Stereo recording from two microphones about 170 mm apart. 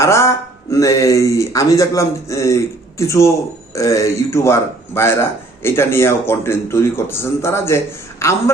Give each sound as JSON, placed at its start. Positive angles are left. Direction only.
{"t": 0.0, "sound": "a man's voice", "side_deg": 15}